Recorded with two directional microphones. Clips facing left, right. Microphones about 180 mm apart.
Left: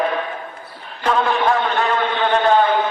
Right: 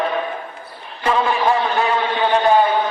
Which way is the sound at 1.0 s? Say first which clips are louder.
Even; 5° right (ahead or behind).